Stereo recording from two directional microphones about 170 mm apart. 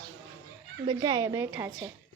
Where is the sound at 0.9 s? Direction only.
25° right (ahead or behind).